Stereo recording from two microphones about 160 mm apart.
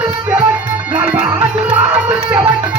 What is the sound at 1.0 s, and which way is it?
Music, 10° right (ahead or behind).